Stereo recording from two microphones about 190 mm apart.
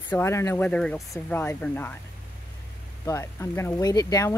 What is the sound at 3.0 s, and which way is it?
Speech, 15° left (ahead or behind).